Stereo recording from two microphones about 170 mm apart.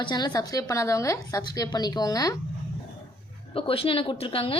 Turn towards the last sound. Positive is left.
turn(degrees=30)  # may be behind; listen again after turning